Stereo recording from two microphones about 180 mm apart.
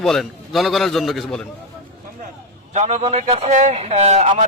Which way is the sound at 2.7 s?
35° right (ahead or behind).